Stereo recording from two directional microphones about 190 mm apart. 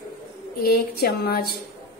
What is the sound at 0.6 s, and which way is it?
Speech, 55° left (ahead or behind).